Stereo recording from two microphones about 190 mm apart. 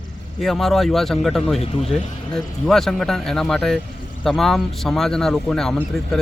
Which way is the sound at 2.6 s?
Centre (ahead or behind).